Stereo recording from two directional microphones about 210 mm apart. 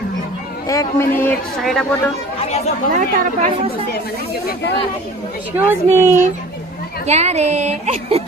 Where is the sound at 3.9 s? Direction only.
45° left (ahead or behind).